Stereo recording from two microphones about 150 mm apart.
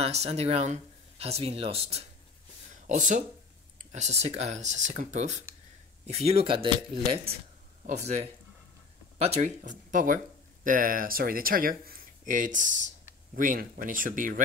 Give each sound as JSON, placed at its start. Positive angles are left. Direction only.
{"t": 0.0, "sound": "speech", "side_deg": -45}
{"t": 2.9, "sound": "speech", "side_deg": -55}
{"t": 7.8, "sound": "speech", "side_deg": -50}
{"t": 13.3, "sound": "speech", "side_deg": -70}